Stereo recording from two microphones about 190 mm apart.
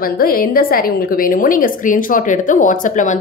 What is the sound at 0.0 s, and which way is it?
A woman's voice, 50° left (ahead or behind).